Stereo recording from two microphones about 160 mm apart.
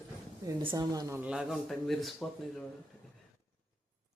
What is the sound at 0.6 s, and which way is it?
Speech, 25° right (ahead or behind).